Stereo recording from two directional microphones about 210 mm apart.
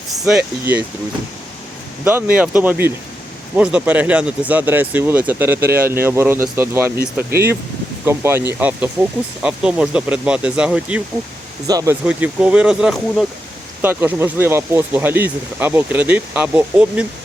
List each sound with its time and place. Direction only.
0.3 s speech: 5° right (ahead or behind)
2.0 s speech: 5° right (ahead or behind)
7.3 s speech: 50° right (ahead or behind)
8.0 s speech: 10° right (ahead or behind)